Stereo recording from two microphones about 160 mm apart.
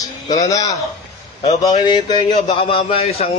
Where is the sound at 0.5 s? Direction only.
20° left (ahead or behind).